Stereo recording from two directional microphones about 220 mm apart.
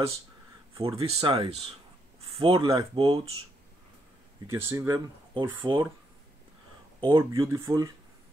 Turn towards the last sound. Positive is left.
turn(degrees=-15)  # may be behind; listen again after turning